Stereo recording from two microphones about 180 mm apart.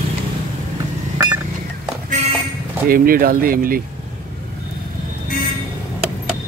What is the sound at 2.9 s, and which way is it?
Speech, 55° right (ahead or behind).